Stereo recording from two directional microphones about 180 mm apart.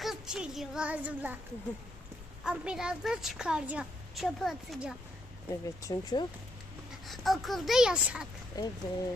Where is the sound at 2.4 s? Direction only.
5° right (ahead or behind).